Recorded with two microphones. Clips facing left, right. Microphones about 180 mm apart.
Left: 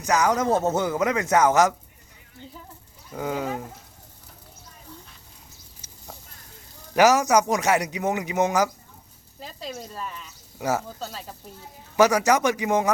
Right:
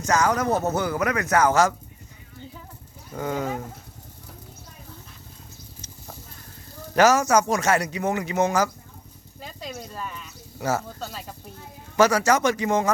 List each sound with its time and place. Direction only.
0.0 s speech: 15° left (ahead or behind)
3.1 s a man's voice: 5° left (ahead or behind)
6.9 s a man's voice: 15° left (ahead or behind)
9.6 s speech: centre (ahead or behind)
10.6 s a man's voice: 10° left (ahead or behind)
11.9 s a man's voice: 15° left (ahead or behind)